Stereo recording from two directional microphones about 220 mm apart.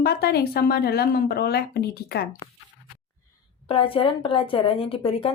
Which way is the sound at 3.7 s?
25° left (ahead or behind).